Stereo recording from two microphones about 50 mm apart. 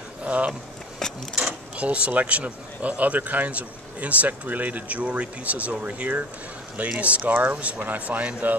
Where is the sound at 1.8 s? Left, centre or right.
Right.